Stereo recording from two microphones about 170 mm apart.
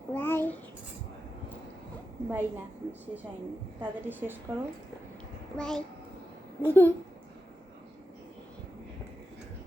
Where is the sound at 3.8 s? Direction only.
10° right (ahead or behind).